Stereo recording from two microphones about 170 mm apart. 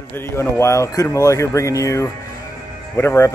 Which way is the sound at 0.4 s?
15° left (ahead or behind).